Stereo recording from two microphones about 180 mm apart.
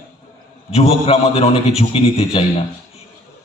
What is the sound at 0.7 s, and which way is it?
A man's voice, 35° left (ahead or behind).